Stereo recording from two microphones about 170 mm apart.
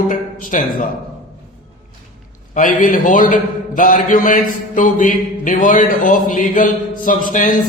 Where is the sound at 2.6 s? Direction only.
50° left (ahead or behind).